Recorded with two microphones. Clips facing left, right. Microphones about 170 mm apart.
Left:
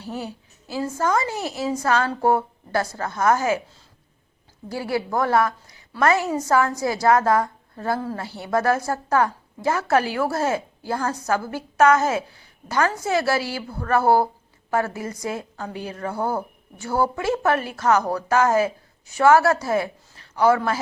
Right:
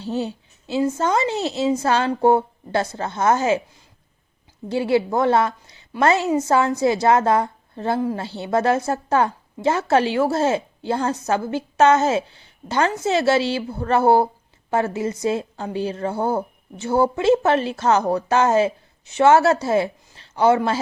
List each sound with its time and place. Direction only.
0.0 s a woman's voice: 25° right (ahead or behind)
4.7 s a woman's voice: 25° right (ahead or behind)